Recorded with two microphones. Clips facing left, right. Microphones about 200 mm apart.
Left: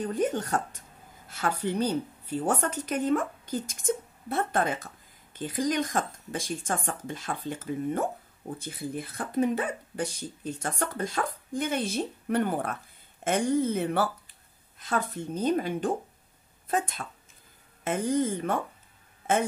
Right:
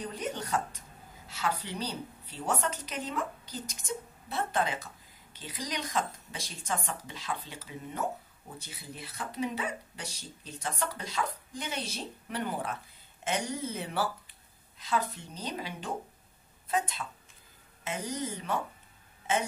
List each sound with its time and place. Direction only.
0.0 s a woman's voice: 50° left (ahead or behind)